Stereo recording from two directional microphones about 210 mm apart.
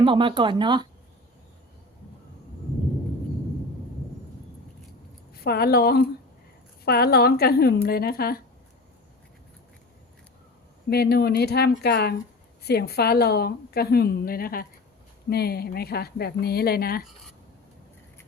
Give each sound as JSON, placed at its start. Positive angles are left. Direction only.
{"t": 0.0, "sound": "speech", "side_deg": -25}
{"t": 5.3, "sound": "a woman's voice", "side_deg": 45}
{"t": 10.8, "sound": "a woman's voice", "side_deg": 50}